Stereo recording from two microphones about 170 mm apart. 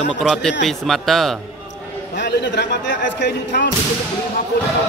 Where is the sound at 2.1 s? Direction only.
80° left.